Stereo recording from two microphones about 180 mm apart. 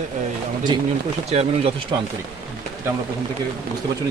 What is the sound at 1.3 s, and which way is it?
Speech, 35° right (ahead or behind).